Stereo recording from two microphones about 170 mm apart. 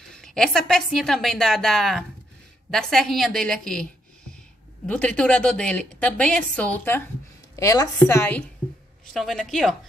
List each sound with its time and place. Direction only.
0.1 s a woman's voice: 5° left (ahead or behind)
9.0 s a woman's voice: centre (ahead or behind)